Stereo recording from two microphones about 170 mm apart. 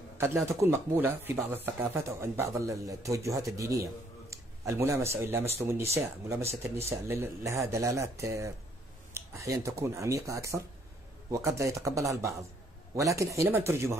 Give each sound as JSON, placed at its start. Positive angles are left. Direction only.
{"t": 0.5, "sound": "speech", "side_deg": -15}